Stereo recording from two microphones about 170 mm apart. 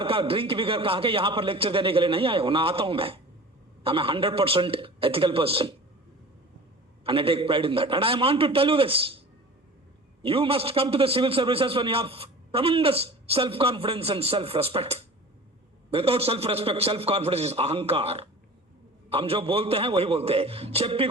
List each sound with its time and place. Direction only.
0.0 s a man's voice: 30° right (ahead or behind)
7.0 s a man's voice: 30° right (ahead or behind)
10.2 s a man's voice: 30° right (ahead or behind)